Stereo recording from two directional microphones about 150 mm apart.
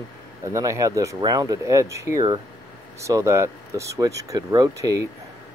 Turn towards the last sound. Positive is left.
turn(degrees=-20)  # may be behind; listen again after turning